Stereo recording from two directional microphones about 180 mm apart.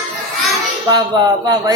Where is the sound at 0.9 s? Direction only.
20° right (ahead or behind).